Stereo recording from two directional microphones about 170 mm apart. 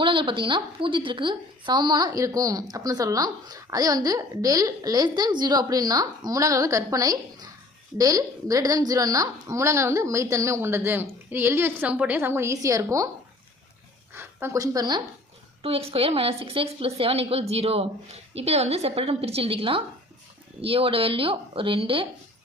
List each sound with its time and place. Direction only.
0.0 s a woman's voice: 30° right (ahead or behind)
14.1 s speech: 15° right (ahead or behind)
15.6 s a woman's voice: 35° right (ahead or behind)